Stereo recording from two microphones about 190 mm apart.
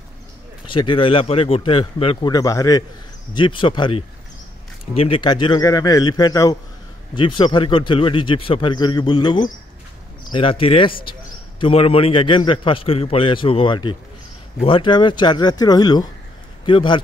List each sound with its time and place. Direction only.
0.7 s speech: 25° left (ahead or behind)